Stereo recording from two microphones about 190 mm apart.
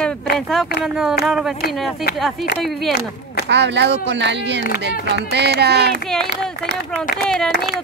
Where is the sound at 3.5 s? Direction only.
65° right (ahead or behind).